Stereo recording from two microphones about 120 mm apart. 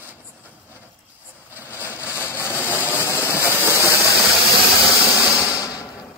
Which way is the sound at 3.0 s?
20° left (ahead or behind).